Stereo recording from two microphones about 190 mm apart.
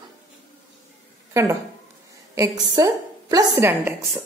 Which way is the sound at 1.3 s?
15° right (ahead or behind).